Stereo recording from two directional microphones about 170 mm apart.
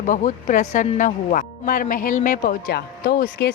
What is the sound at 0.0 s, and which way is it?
Speech, 50° left (ahead or behind).